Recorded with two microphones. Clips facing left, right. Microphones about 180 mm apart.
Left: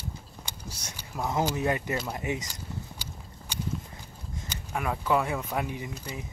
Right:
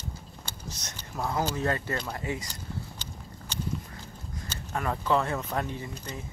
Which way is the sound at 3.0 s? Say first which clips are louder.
Even; 10° left (ahead or behind).